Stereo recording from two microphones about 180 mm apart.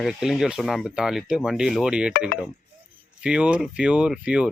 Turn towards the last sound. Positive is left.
turn(degrees=-5)  # may be behind; listen again after turning